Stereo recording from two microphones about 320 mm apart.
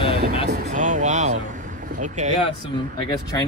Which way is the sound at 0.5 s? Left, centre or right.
Right.